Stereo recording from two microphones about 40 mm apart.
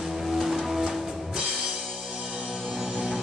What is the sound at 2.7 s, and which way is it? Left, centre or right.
Music, centre.